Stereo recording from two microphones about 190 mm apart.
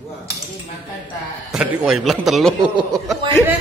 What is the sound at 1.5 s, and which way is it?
A man's voice, 5° right (ahead or behind).